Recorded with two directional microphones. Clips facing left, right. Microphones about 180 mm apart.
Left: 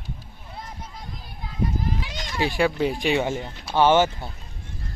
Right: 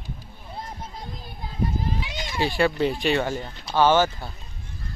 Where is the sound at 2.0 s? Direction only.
5° right (ahead or behind).